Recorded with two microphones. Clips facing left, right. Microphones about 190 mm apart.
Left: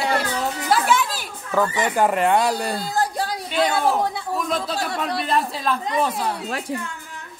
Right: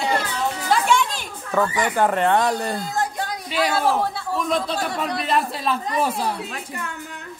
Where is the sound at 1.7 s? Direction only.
20° left (ahead or behind).